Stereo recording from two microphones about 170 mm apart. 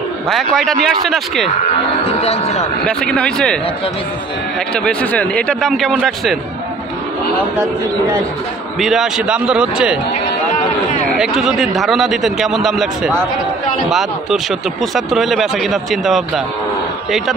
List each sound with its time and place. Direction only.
0.3 s speech: centre (ahead or behind)
2.0 s speech: 35° left (ahead or behind)
2.9 s speech: 5° left (ahead or behind)
4.7 s speech: 5° left (ahead or behind)
8.7 s speech: centre (ahead or behind)
11.1 s speech: centre (ahead or behind)